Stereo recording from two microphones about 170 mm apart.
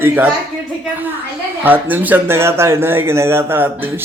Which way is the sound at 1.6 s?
10° right (ahead or behind).